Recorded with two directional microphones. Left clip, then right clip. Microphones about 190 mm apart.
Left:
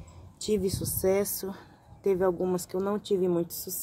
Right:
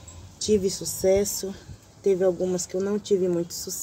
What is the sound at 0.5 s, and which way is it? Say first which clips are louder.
A woman's voice: right 5 dB; 15° left (ahead or behind).